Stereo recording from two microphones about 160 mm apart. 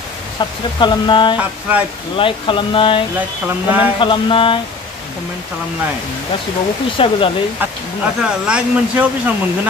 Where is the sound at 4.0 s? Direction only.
30° left (ahead or behind).